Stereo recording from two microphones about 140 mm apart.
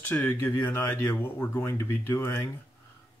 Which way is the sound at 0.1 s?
15° left (ahead or behind).